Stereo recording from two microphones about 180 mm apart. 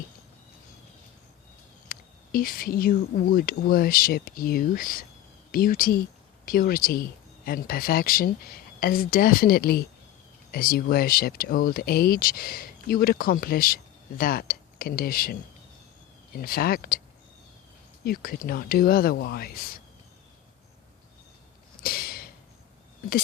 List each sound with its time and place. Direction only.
1.9 s speech: 55° left (ahead or behind)
18.0 s speech: 55° left (ahead or behind)
21.8 s a sound: 55° left (ahead or behind)